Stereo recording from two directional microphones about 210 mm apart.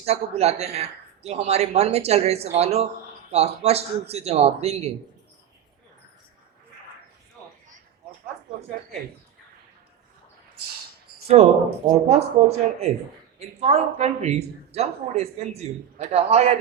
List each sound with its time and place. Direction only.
0.0 s speech: 30° right (ahead or behind)
11.4 s speech: 30° right (ahead or behind)